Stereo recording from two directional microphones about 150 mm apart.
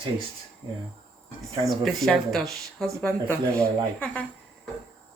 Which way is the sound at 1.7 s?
Centre (ahead or behind).